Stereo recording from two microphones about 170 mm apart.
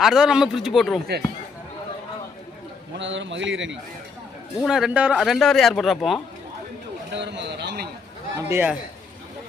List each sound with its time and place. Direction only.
0.0 s speech: 5° right (ahead or behind)
3.0 s a man's voice: 90° right
4.6 s speech: 5° right (ahead or behind)
7.2 s speech: 90° right
8.4 s a man's voice: 15° right (ahead or behind)